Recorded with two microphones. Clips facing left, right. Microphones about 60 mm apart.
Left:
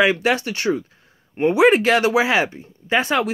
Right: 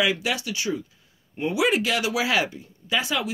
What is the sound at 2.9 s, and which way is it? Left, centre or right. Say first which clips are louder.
Speech: left 7 dB; left.